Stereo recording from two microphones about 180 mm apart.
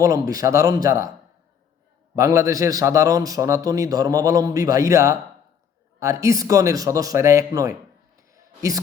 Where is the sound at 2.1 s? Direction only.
15° right (ahead or behind).